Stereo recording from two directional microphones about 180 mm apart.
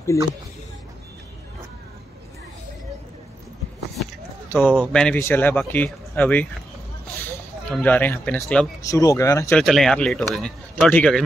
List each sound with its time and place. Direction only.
4.5 s speech: 10° left (ahead or behind)
7.7 s speech: 10° left (ahead or behind)
9.6 s a man's voice: centre (ahead or behind)